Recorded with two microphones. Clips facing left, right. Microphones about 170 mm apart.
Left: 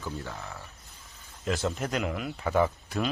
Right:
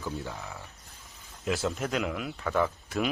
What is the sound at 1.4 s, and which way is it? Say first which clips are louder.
Speech: even; centre (ahead or behind).